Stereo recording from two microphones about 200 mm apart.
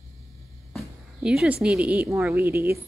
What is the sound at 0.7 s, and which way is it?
Speech, 5° right (ahead or behind).